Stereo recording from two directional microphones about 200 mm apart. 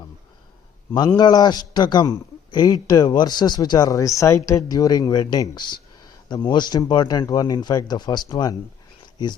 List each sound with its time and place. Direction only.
0.9 s a man's voice: 20° left (ahead or behind)